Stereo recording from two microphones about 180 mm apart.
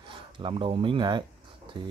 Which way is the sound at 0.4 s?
30° right (ahead or behind).